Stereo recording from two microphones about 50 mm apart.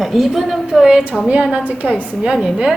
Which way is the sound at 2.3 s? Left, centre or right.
Centre.